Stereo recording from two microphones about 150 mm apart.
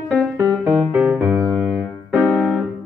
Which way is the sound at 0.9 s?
10° right (ahead or behind).